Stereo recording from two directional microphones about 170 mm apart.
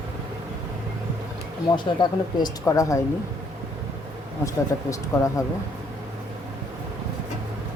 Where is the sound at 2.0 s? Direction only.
25° left (ahead or behind).